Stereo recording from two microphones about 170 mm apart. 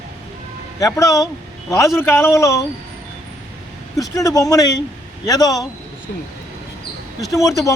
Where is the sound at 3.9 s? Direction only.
20° left (ahead or behind).